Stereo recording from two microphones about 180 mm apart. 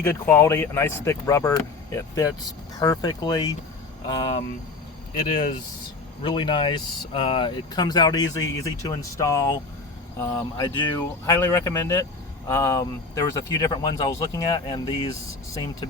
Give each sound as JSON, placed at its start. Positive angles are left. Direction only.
{"t": 0.0, "sound": "speech", "side_deg": 10}
{"t": 6.2, "sound": "speech", "side_deg": 25}
{"t": 11.3, "sound": "speech", "side_deg": 15}